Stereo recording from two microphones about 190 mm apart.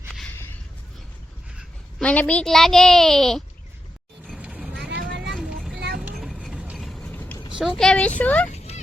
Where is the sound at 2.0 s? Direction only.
5° left (ahead or behind).